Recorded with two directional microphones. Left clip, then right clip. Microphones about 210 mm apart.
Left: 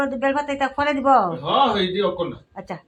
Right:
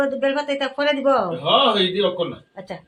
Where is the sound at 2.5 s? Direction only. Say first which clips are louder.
Left 1 dB; 45° left (ahead or behind).